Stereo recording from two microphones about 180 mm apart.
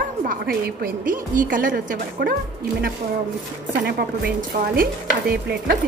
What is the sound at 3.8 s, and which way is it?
Stir, 60° right (ahead or behind).